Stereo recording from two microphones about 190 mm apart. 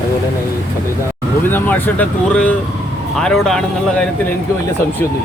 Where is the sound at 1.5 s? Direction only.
10° left (ahead or behind).